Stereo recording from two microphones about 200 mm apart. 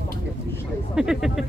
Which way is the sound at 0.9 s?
5° right (ahead or behind).